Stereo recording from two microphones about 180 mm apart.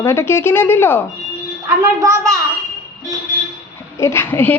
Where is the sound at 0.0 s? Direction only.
15° left (ahead or behind).